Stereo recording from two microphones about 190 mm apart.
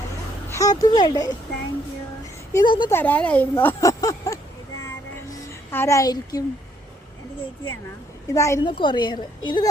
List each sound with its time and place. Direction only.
0.5 s a woman's voice: 20° left (ahead or behind)
2.5 s a woman's voice: 20° left (ahead or behind)
2.9 s speech: 10° left (ahead or behind)
5.3 s music: 15° left (ahead or behind)
8.3 s a woman's voice: 15° left (ahead or behind)